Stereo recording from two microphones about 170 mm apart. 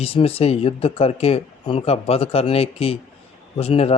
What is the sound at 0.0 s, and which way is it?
Speech, 35° left (ahead or behind).